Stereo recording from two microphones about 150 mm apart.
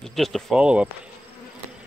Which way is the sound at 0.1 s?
Centre (ahead or behind).